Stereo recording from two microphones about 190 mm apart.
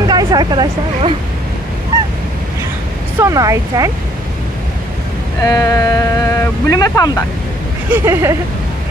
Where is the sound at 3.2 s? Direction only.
15° right (ahead or behind).